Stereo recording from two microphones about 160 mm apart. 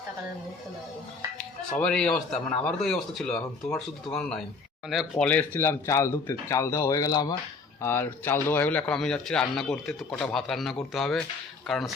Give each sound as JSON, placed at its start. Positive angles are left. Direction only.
{"t": 1.8, "sound": "a man's voice", "side_deg": 5}
{"t": 7.8, "sound": "a man's voice", "side_deg": 15}